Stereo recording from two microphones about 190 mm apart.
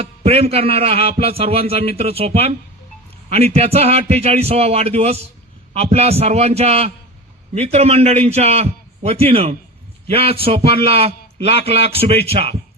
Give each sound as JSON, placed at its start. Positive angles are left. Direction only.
{"t": 0.0, "sound": "a man's voice", "side_deg": -30}